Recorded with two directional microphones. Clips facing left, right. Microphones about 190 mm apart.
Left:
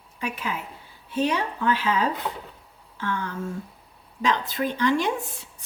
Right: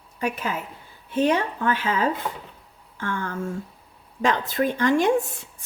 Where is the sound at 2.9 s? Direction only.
50° right (ahead or behind).